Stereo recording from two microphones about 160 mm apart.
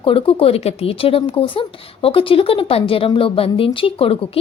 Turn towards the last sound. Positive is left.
turn(degrees=35)  # may be behind; listen again after turning